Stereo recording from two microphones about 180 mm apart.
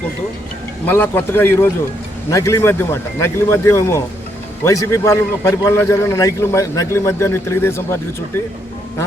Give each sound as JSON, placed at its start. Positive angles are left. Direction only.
{"t": 0.9, "sound": "a man's voice", "side_deg": 10}